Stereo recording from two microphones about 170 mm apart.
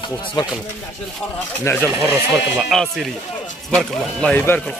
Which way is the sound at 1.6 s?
15° left (ahead or behind).